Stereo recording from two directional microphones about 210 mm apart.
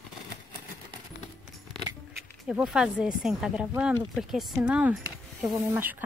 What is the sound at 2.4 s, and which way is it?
Speech, 5° right (ahead or behind).